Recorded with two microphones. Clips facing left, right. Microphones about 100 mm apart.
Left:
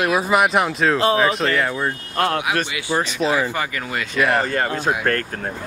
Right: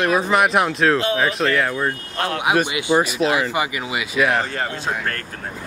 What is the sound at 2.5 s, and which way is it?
Speech, 15° right (ahead or behind).